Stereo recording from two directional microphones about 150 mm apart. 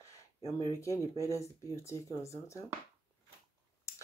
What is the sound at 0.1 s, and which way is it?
Speech, 20° left (ahead or behind).